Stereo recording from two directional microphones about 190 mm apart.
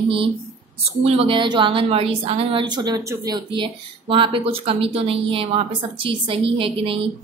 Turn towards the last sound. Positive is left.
turn(degrees=-30)  # may be behind; listen again after turning